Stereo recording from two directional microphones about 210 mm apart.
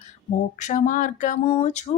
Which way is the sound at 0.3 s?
35° left (ahead or behind).